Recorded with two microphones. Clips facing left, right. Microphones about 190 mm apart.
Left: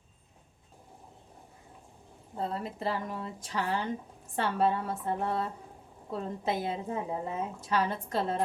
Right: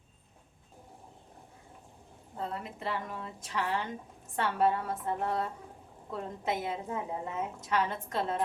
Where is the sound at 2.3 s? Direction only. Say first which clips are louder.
Left 4 dB; 30° left (ahead or behind).